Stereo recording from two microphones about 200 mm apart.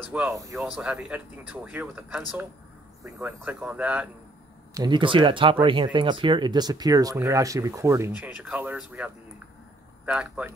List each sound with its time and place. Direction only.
0.1 s speech: 10° right (ahead or behind)
0.6 s speech: centre (ahead or behind)
4.7 s speech: 25° right (ahead or behind); by 10.5 s 5° right (ahead or behind)